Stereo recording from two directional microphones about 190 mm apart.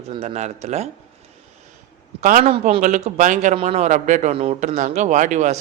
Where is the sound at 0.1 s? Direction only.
30° right (ahead or behind).